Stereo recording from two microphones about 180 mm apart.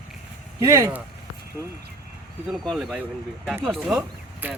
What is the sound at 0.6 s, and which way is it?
Speech, 15° right (ahead or behind).